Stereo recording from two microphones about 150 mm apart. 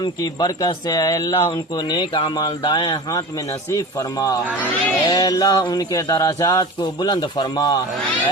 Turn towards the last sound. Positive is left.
turn(degrees=25)  # may be behind; listen again after turning